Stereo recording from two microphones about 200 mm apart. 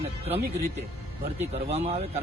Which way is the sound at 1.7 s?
30° right (ahead or behind).